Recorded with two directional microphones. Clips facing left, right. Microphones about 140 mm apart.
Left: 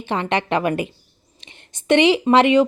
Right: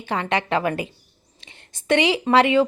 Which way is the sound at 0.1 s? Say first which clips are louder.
Left 2 dB; 20° left (ahead or behind).